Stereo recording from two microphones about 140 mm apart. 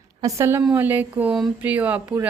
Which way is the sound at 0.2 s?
25° right (ahead or behind).